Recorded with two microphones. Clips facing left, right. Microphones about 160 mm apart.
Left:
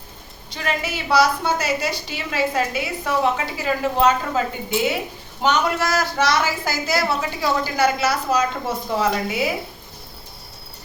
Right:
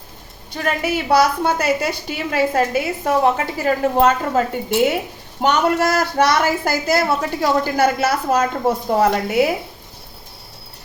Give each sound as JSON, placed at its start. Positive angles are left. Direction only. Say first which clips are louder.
{"t": 0.5, "sound": "a woman's voice", "louder": "right 5 dB", "side_deg": -50}